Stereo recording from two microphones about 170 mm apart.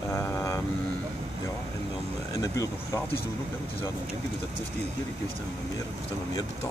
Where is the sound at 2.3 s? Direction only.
20° left (ahead or behind).